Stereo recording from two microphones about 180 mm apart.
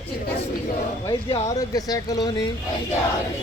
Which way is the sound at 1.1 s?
25° left (ahead or behind).